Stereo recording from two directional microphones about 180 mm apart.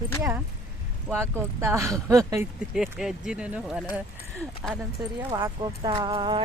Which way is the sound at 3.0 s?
5° right (ahead or behind).